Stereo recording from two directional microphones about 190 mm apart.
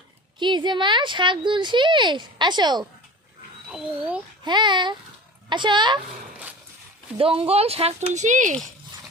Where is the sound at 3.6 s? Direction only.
5° right (ahead or behind).